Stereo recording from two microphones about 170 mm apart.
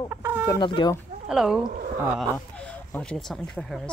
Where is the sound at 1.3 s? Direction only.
5° right (ahead or behind).